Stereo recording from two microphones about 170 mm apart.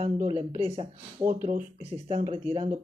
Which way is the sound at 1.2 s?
50° right (ahead or behind).